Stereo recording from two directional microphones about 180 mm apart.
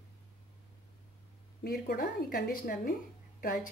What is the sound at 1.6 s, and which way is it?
A woman's voice, 60° left (ahead or behind).